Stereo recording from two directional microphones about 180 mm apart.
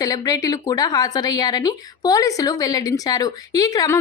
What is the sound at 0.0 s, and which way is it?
Speech, 20° left (ahead or behind).